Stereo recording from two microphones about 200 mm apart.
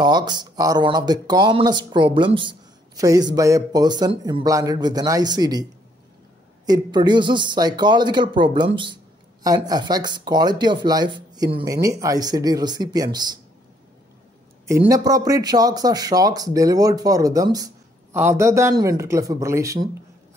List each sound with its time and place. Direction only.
0.0 s speech: 20° right (ahead or behind)
14.7 s speech: 15° right (ahead or behind)